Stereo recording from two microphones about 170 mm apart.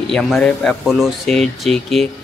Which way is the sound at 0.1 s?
5° left (ahead or behind).